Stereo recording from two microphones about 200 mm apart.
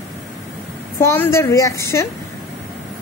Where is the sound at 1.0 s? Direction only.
10° left (ahead or behind).